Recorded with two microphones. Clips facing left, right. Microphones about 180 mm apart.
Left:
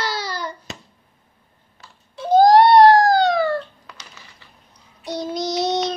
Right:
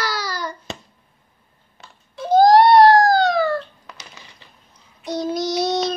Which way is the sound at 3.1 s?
20° left (ahead or behind).